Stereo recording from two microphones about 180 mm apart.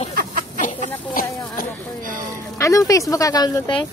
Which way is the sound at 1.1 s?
55° left (ahead or behind).